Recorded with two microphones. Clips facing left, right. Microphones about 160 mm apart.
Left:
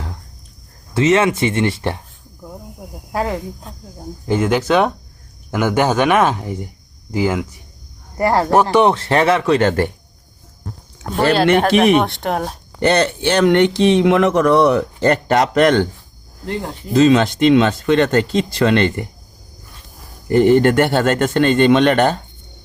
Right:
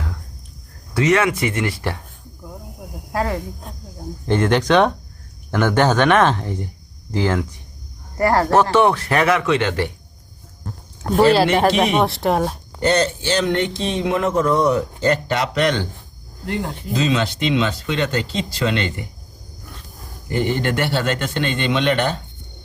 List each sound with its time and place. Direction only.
0.9 s speech: 25° left (ahead or behind)
3.1 s speech: 20° left (ahead or behind)
4.3 s speech: 5° left (ahead or behind); by 9.9 s 45° left (ahead or behind)
11.9 s speech: centre (ahead or behind)
12.8 s speech: 65° left (ahead or behind)
16.9 s speech: 50° left (ahead or behind)
20.3 s speech: 50° left (ahead or behind)